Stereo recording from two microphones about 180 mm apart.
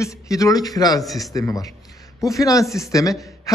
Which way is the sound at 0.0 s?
20° left (ahead or behind).